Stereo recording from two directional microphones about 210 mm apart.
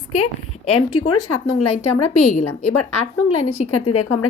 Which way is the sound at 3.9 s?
90° left.